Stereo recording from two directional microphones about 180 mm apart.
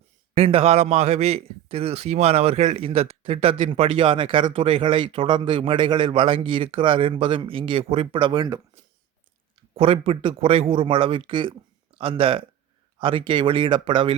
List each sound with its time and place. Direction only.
0.3 s a man's voice: 30° right (ahead or behind)
9.7 s a man's voice: 30° right (ahead or behind)